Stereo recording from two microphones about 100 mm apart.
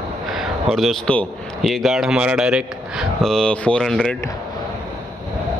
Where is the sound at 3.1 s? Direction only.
5° left (ahead or behind).